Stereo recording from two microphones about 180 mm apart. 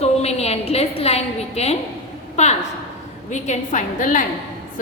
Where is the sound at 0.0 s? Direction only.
35° left (ahead or behind).